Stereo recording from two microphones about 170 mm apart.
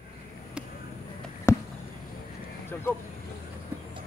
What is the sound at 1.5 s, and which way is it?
Basketball bounce, 15° left (ahead or behind).